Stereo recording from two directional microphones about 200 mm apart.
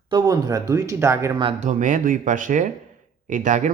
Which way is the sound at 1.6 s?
40° right (ahead or behind).